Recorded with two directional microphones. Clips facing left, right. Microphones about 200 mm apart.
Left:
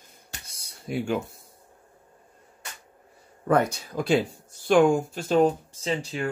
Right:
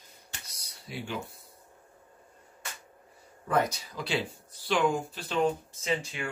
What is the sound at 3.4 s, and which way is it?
Speech, 55° left (ahead or behind).